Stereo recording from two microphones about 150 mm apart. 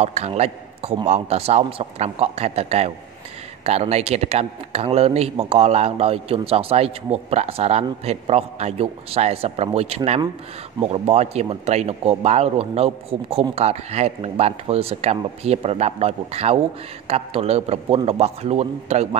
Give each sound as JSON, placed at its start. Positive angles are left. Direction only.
{"t": 0.0, "sound": "a man's voice", "side_deg": -45}